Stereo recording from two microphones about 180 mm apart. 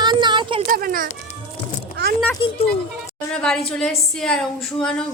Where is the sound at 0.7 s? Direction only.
50° right (ahead or behind).